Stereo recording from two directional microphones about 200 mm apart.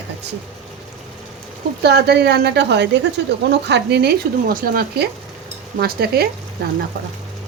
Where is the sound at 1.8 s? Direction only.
55° right (ahead or behind).